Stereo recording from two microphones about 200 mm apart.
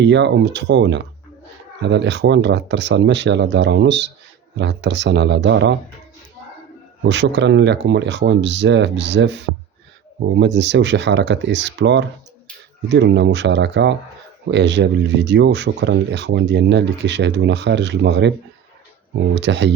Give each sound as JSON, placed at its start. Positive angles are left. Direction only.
{"t": 0.0, "sound": "speech", "side_deg": -60}
{"t": 7.0, "sound": "speech", "side_deg": -60}